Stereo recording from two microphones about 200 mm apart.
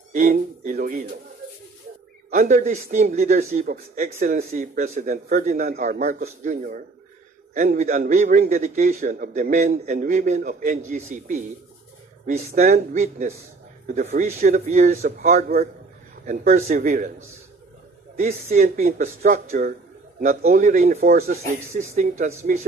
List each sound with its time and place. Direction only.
0.1 s speech: 35° right (ahead or behind)
2.3 s a man's voice: 40° right (ahead or behind)
10.5 s a man's voice: 45° right (ahead or behind)
18.1 s a man's voice: 35° right (ahead or behind)